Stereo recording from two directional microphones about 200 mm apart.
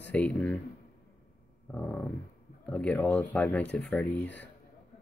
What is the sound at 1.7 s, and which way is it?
Speech, 5° left (ahead or behind).